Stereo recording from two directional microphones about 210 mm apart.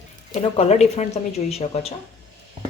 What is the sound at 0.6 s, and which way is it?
Speech, 30° left (ahead or behind).